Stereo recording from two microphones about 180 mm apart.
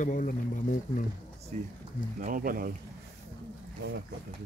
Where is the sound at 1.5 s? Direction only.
40° right (ahead or behind).